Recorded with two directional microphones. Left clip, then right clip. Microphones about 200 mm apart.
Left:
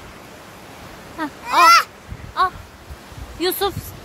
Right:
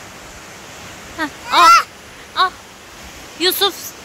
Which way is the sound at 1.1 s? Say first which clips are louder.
Right 3 dB; 5° right (ahead or behind).